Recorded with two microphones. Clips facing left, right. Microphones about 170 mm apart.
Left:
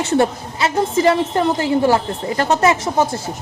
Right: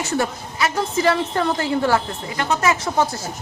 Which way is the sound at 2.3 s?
40° left (ahead or behind).